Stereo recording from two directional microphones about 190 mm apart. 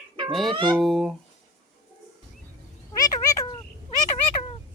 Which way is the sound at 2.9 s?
20° left (ahead or behind).